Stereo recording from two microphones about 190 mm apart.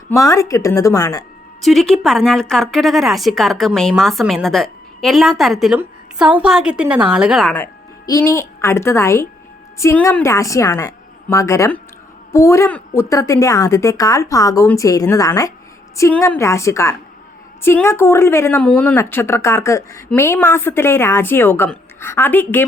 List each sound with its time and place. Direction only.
0.1 s a woman's voice: 15° left (ahead or behind)
1.6 s speech: centre (ahead or behind)
7.5 s a woman's voice: 15° left (ahead or behind)